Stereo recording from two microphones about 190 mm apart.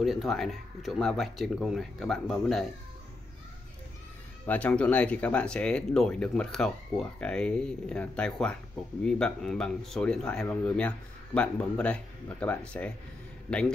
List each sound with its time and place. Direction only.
0.0 s speech: centre (ahead or behind)
4.5 s speech: 5° left (ahead or behind)